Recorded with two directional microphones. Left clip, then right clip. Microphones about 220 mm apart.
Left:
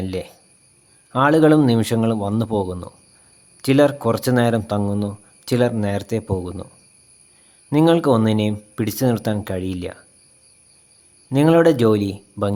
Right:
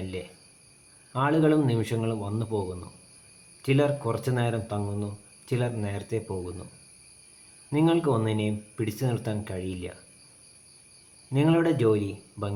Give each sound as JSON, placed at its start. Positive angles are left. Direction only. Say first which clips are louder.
{"t": 1.1, "sound": "speech", "louder": "left 9 dB", "side_deg": 50}
{"t": 7.7, "sound": "speech", "louder": "left 9 dB", "side_deg": 50}
{"t": 11.3, "sound": "speech", "louder": "left 10 dB", "side_deg": 50}